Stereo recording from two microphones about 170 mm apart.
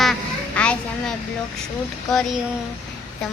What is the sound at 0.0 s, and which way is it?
Quack, 5° left (ahead or behind).